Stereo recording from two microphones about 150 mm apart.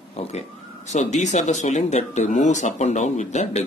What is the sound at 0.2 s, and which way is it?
Speech, 40° left (ahead or behind).